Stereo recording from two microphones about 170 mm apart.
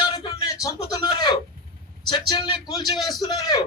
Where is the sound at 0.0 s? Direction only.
25° left (ahead or behind).